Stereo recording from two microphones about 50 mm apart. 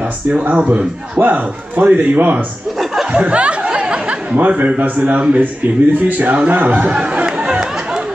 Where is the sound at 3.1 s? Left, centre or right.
Right.